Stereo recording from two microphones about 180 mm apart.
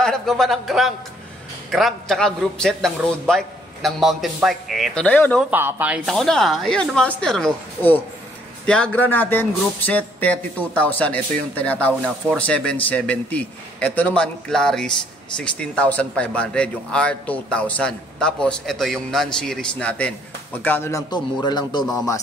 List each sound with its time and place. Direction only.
0.0 s a man's voice: centre (ahead or behind)
5.4 s a man's voice: 10° right (ahead or behind); by 21.8 s 25° left (ahead or behind)